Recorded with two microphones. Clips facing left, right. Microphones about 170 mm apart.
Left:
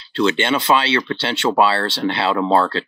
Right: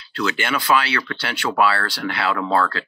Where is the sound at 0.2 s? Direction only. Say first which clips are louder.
Left 6 dB; 25° left (ahead or behind).